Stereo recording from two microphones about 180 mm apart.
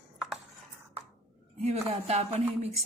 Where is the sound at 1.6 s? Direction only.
35° right (ahead or behind).